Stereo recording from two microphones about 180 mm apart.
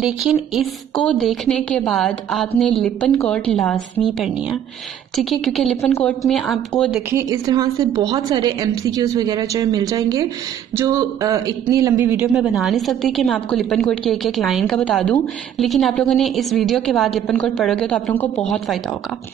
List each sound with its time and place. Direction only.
0.0 s speech: centre (ahead or behind)
7.1 s a woman's voice: 20° right (ahead or behind); by 18.8 s 5° left (ahead or behind)